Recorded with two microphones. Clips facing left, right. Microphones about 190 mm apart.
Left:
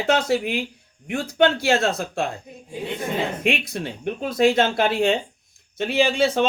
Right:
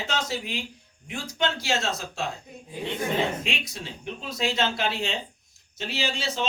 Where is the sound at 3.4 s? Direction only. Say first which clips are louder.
Left 10 dB; 55° left (ahead or behind).